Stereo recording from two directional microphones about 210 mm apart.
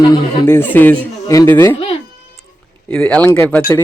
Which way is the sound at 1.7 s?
25° left (ahead or behind).